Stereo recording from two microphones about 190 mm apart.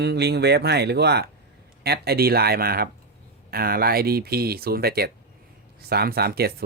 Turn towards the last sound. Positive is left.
turn(degrees=-55)  # may be behind; listen again after turning